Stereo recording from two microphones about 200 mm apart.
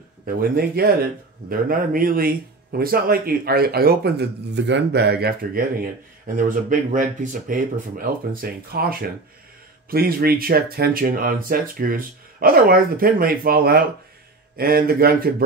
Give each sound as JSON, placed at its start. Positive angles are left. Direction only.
{"t": 0.4, "sound": "speech", "side_deg": -50}